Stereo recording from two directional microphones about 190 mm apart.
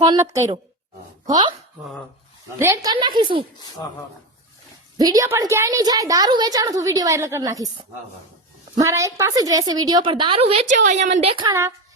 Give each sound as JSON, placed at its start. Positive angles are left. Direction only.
{"t": 0.0, "sound": "a woman's voice", "side_deg": -20}
{"t": 2.6, "sound": "a woman's voice", "side_deg": -15}
{"t": 2.9, "sound": "a woman's voice", "side_deg": -25}
{"t": 4.9, "sound": "a woman's voice", "side_deg": -20}
{"t": 11.4, "sound": "a woman's voice", "side_deg": -15}